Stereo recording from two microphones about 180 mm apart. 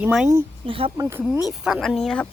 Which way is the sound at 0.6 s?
30° right (ahead or behind).